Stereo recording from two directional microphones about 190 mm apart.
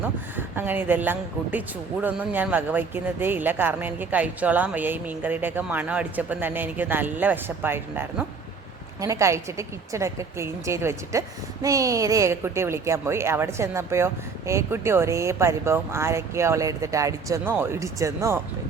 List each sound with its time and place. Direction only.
0.0 s speech: 10° right (ahead or behind)